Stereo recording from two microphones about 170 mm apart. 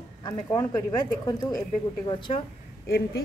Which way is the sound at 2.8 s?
65° left (ahead or behind).